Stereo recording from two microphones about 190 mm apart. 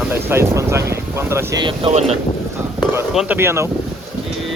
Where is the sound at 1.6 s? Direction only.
25° right (ahead or behind).